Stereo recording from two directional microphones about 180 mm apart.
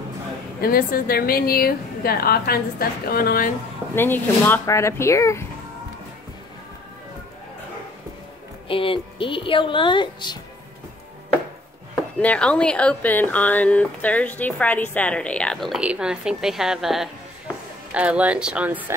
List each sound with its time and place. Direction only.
0.6 s a woman's voice: 55° left (ahead or behind)
3.9 s speech: 10° left (ahead or behind)
8.6 s a woman's voice: 30° left (ahead or behind)
11.9 s speech: 10° left (ahead or behind); by 18.9 s 10° right (ahead or behind)